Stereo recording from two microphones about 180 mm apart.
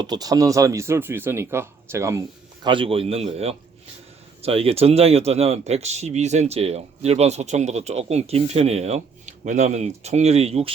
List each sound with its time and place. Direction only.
0.0 s speech: 20° right (ahead or behind)
2.6 s speech: 30° right (ahead or behind)